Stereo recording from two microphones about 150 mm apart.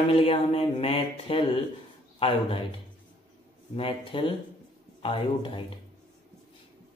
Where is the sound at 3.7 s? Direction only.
40° left (ahead or behind).